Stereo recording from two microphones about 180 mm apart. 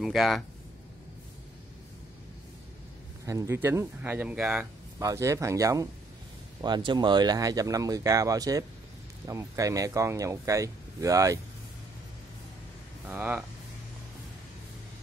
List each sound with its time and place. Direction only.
0.0 s speech: centre (ahead or behind)
3.3 s speech: 15° right (ahead or behind)
4.9 s speech: 15° right (ahead or behind)
13.0 s speech: 10° right (ahead or behind)